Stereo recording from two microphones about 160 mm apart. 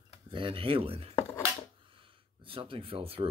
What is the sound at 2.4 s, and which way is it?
Speech, 35° right (ahead or behind).